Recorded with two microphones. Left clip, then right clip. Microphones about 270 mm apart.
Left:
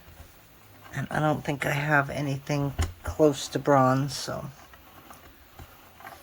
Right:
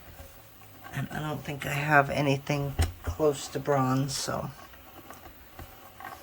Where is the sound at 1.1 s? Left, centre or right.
Centre.